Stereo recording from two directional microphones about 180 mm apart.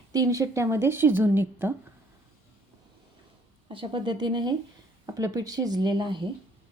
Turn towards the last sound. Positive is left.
turn(degrees=-25)  # may be behind; listen again after turning